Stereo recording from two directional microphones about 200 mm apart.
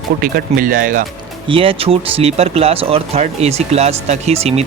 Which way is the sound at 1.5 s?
25° right (ahead or behind).